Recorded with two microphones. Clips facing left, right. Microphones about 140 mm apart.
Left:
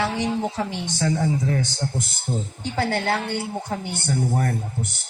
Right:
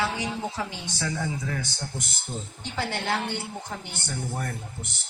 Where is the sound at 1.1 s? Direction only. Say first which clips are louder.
Left 8 dB; 30° left (ahead or behind).